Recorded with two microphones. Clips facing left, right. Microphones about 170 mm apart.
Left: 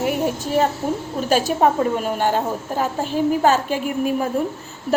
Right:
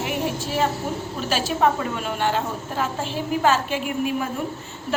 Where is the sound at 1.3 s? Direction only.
45° left (ahead or behind).